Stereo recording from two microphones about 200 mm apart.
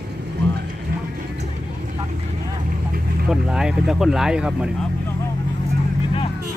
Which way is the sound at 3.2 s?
5° right (ahead or behind).